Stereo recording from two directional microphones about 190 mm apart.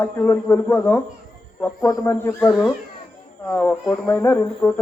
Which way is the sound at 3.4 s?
10° left (ahead or behind).